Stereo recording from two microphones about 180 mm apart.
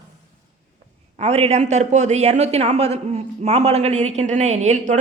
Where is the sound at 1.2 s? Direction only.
35° right (ahead or behind).